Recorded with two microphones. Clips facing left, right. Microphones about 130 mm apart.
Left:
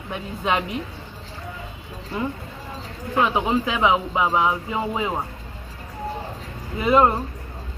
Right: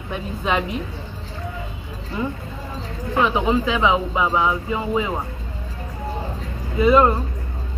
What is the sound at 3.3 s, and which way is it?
Speech, 20° left (ahead or behind).